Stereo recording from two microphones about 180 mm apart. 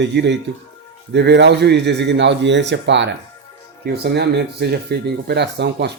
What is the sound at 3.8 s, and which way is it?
Speech, 65° right (ahead or behind).